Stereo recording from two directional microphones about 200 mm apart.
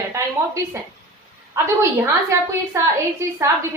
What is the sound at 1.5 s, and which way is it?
A woman's voice, 15° right (ahead or behind).